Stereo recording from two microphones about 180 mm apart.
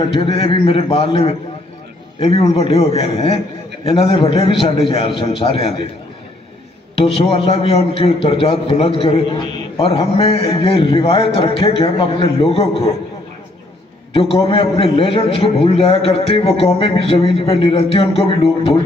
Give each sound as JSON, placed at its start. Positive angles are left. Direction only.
{"t": 0.0, "sound": "a man's voice", "side_deg": 30}
{"t": 7.0, "sound": "a man's voice", "side_deg": 35}
{"t": 14.1, "sound": "a man's voice", "side_deg": 30}